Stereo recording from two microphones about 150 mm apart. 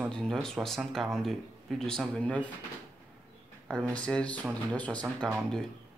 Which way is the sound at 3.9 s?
5° left (ahead or behind).